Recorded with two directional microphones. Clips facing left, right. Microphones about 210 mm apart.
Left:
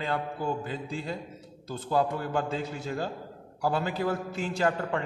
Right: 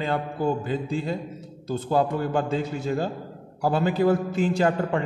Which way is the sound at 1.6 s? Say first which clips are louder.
Right 4 dB; 40° right (ahead or behind).